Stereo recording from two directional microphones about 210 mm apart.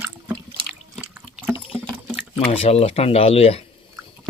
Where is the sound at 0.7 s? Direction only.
5° right (ahead or behind).